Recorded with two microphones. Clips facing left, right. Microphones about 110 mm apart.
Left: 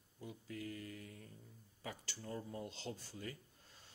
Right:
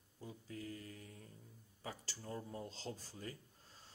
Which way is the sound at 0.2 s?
35° right (ahead or behind).